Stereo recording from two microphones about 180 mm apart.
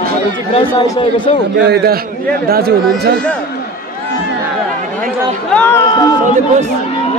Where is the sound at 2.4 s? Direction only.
55° right (ahead or behind).